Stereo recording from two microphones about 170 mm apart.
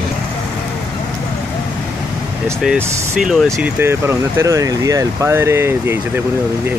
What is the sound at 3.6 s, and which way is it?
Speech, 15° right (ahead or behind).